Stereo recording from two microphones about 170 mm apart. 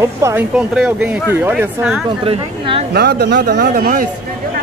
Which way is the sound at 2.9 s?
75° right (ahead or behind).